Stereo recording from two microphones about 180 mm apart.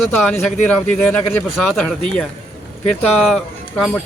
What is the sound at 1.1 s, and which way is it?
Speech, 5° left (ahead or behind).